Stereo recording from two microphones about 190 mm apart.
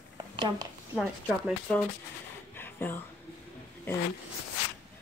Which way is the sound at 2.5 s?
10° left (ahead or behind).